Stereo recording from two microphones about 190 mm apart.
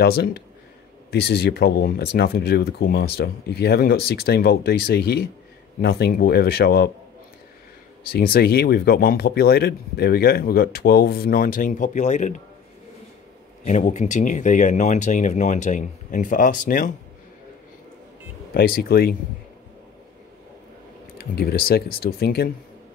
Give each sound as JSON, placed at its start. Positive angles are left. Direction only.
{"t": 0.0, "sound": "speech", "side_deg": 55}
{"t": 8.1, "sound": "a man's voice", "side_deg": 50}
{"t": 13.7, "sound": "speech", "side_deg": 40}
{"t": 18.5, "sound": "a man's voice", "side_deg": 55}
{"t": 21.2, "sound": "a man's voice", "side_deg": 55}